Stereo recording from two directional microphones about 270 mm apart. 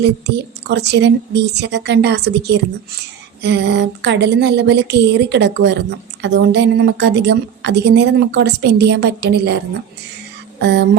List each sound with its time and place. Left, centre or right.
0.0 s a woman's voice: right
10.6 s speech: right